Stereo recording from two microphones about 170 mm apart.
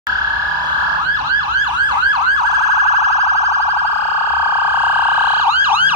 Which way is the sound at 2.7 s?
40° right (ahead or behind).